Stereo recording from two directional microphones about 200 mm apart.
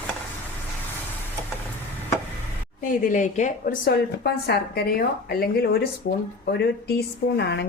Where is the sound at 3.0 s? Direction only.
40° left (ahead or behind).